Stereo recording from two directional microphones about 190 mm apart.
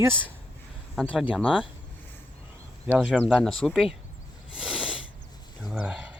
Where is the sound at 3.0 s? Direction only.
Centre (ahead or behind).